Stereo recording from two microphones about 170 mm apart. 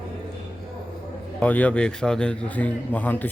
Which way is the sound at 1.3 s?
10° left (ahead or behind).